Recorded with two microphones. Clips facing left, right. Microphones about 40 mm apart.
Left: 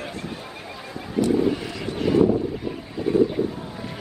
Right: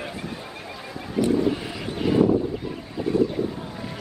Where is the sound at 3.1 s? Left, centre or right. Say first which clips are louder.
Left 3 dB; left.